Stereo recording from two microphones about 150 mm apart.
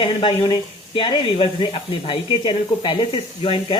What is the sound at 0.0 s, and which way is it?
Speech, 35° left (ahead or behind).